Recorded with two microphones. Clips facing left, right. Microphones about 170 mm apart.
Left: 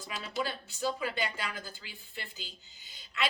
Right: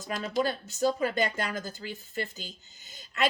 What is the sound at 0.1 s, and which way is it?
A woman's voice, 45° right (ahead or behind).